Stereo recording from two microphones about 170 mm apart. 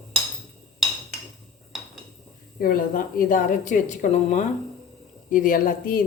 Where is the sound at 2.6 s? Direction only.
55° left (ahead or behind).